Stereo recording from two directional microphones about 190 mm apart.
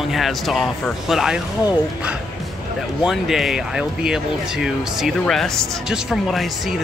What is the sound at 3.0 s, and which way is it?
Speech, centre (ahead or behind).